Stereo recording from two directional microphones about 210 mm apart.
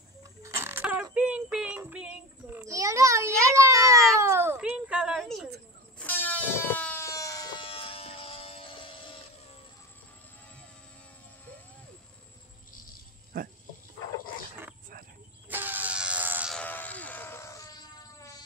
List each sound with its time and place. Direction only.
0.4 s child singing: 10° right (ahead or behind)
4.2 s a sound: 10° right (ahead or behind)
5.9 s air horn: 10° left (ahead or behind); by 9.2 s 25° left (ahead or behind)
13.3 s dog: 45° right (ahead or behind)
15.5 s music: 10° right (ahead or behind)
16.5 s a sound: 10° left (ahead or behind)